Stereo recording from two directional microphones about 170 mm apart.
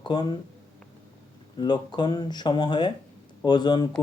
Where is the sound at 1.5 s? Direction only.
25° left (ahead or behind).